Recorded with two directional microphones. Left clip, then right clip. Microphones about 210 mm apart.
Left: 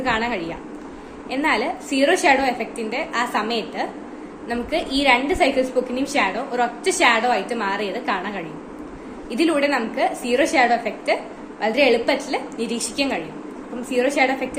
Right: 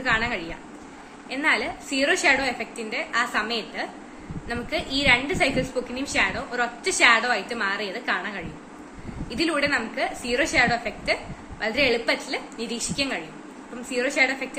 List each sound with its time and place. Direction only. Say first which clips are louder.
0.0 s a woman's voice: left 2 dB; 10° right (ahead or behind)